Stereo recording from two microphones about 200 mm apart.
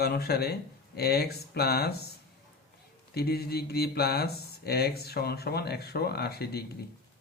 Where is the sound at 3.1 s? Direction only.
50° left (ahead or behind).